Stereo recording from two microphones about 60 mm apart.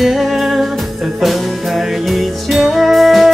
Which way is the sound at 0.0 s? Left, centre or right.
Centre.